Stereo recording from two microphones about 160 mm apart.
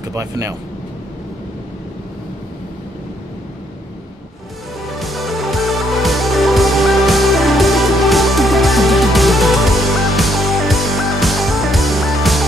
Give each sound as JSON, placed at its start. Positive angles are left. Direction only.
{"t": 0.1, "sound": "speech", "side_deg": -20}
{"t": 4.8, "sound": "music", "side_deg": 0}